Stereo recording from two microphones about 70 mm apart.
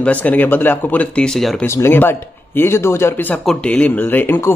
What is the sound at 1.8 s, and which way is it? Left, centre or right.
Speech, left.